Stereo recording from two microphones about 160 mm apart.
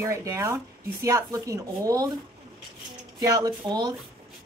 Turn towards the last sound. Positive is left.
turn(degrees=-25)  # may be behind; listen again after turning